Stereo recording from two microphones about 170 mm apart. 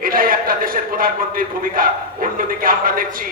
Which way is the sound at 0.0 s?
55° right (ahead or behind).